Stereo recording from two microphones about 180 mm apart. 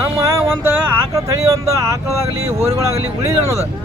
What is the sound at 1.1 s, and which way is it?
Speech, 15° right (ahead or behind).